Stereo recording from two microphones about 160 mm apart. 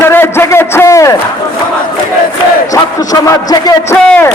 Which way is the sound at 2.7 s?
25° left (ahead or behind).